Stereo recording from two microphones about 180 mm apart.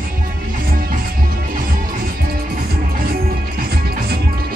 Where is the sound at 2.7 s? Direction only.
55° right (ahead or behind).